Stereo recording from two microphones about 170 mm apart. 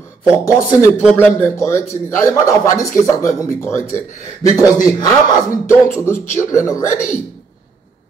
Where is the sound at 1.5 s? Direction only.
15° left (ahead or behind).